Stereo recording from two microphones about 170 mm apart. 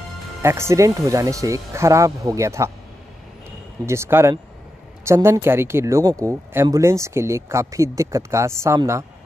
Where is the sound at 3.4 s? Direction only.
15° right (ahead or behind).